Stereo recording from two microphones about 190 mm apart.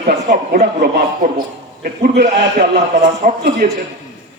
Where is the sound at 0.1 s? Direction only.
50° right (ahead or behind).